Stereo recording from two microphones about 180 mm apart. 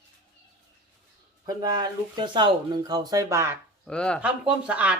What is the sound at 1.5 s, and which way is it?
Speech, 20° right (ahead or behind).